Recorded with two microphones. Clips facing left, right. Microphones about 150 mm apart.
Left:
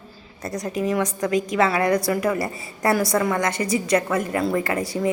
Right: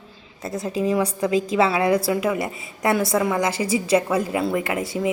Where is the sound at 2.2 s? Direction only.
15° right (ahead or behind).